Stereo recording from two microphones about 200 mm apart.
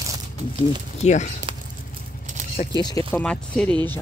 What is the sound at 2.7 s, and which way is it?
Speech, 20° left (ahead or behind).